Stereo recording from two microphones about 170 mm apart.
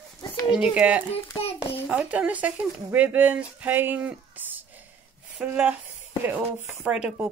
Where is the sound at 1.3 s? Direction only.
35° left (ahead or behind).